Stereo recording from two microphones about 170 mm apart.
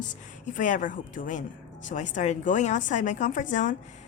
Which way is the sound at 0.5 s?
50° left (ahead or behind).